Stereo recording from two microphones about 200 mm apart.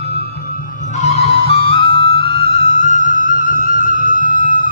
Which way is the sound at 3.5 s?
45° left (ahead or behind).